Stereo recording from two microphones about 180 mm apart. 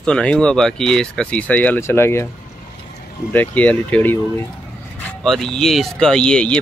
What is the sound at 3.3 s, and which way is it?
Speech, 10° left (ahead or behind).